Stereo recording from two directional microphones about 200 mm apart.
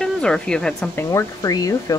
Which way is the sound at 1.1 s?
15° left (ahead or behind).